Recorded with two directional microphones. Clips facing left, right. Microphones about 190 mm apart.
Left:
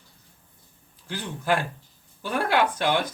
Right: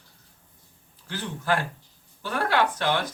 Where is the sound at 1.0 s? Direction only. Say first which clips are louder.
Left 1 dB; 15° left (ahead or behind).